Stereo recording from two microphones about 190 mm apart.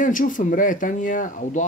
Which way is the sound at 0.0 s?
45° left (ahead or behind).